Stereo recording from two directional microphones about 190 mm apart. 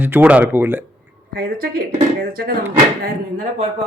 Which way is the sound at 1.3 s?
50° right (ahead or behind).